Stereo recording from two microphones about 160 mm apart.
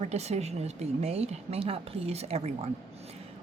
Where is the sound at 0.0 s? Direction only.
45° right (ahead or behind).